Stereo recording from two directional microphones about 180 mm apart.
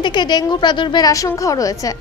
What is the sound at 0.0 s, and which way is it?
A woman's voice, 25° left (ahead or behind).